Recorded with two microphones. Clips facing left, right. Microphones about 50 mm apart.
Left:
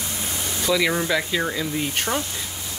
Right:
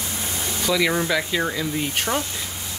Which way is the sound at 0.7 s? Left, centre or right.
Centre.